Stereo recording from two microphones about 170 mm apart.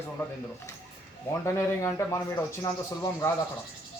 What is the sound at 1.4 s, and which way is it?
Speech, 15° left (ahead or behind).